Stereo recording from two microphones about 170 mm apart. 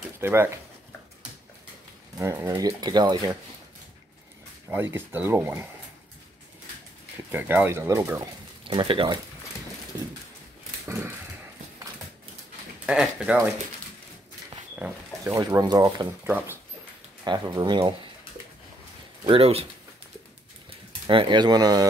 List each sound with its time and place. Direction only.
0.2 s speech: 15° right (ahead or behind)
2.1 s speech: 15° right (ahead or behind)
4.6 s speech: 10° right (ahead or behind)
7.2 s speech: 10° right (ahead or behind)
8.6 s speech: 30° right (ahead or behind)
10.9 s dog: 15° right (ahead or behind)
12.8 s speech: 5° right (ahead or behind)
14.8 s speech: 15° right (ahead or behind)
16.3 s speech: 10° right (ahead or behind)
17.2 s speech: 25° right (ahead or behind)
19.2 s speech: 35° right (ahead or behind)
21.1 s speech: 30° right (ahead or behind)